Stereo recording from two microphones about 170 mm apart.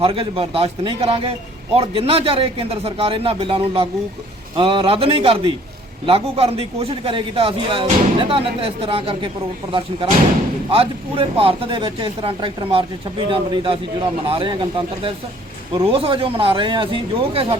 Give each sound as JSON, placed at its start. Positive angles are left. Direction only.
{"t": 0.0, "sound": "a man's voice", "side_deg": -30}
{"t": 10.7, "sound": "a man's voice", "side_deg": -35}